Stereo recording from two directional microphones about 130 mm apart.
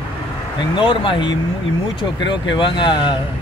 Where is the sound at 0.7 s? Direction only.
40° left (ahead or behind).